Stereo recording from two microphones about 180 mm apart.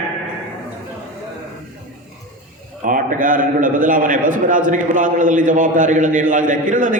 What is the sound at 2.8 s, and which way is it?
A man's voice, 50° right (ahead or behind).